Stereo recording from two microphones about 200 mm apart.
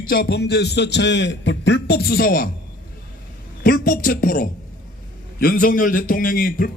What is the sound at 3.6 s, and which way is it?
A man's voice, 45° left (ahead or behind).